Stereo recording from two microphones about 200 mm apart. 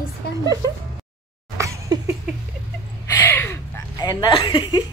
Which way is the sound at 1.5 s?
15° right (ahead or behind).